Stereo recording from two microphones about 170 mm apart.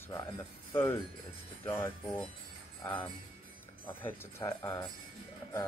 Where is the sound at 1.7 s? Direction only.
15° left (ahead or behind).